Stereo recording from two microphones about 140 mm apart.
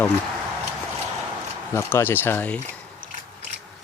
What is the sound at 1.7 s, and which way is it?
Speech, 15° left (ahead or behind).